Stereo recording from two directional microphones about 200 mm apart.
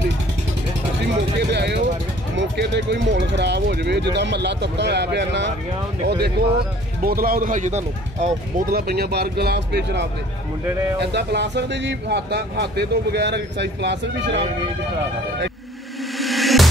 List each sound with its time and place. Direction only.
1.5 s speech: 60° right (ahead or behind)
16.2 s music: centre (ahead or behind)